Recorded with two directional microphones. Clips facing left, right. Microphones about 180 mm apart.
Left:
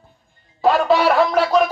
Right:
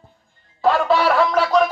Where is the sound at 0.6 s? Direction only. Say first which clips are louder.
Left 2 dB; 20° left (ahead or behind).